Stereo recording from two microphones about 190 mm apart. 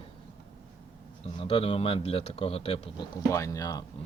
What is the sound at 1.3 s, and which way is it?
A man's voice, 30° left (ahead or behind).